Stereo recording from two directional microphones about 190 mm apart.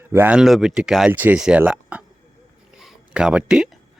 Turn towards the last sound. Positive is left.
turn(degrees=-5)  # may be behind; listen again after turning